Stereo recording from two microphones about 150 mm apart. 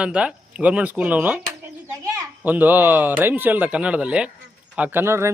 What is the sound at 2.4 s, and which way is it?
Speech, 10° right (ahead or behind).